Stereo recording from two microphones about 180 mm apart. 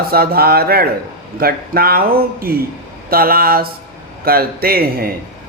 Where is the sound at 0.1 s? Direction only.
55° right (ahead or behind).